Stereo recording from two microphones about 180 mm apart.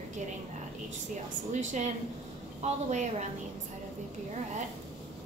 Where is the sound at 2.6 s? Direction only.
40° right (ahead or behind).